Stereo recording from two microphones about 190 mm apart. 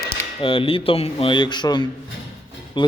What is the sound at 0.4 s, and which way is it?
A man's voice, 30° left (ahead or behind).